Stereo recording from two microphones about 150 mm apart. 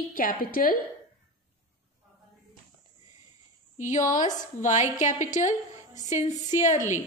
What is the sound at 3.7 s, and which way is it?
A woman's voice, 55° left (ahead or behind).